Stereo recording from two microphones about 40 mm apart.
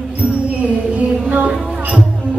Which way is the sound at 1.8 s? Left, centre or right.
Right.